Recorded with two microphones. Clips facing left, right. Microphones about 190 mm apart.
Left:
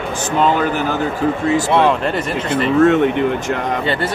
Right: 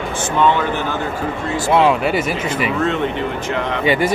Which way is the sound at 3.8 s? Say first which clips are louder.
Right 3 dB; 10° right (ahead or behind).